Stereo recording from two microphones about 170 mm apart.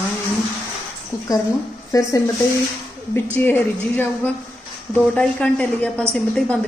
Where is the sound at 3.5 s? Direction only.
10° left (ahead or behind).